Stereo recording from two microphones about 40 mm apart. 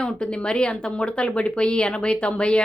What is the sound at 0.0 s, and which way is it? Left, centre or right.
Speech, left.